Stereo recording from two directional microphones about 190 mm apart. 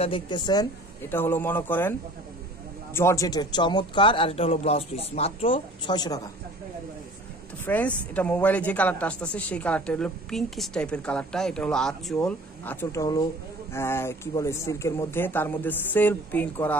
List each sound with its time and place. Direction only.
0.0 s speech: 25° left (ahead or behind)
1.1 s speech: 10° left (ahead or behind)
7.6 s speech: 10° left (ahead or behind)